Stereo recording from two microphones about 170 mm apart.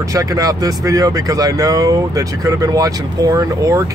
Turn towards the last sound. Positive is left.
turn(degrees=-20)  # may be behind; listen again after turning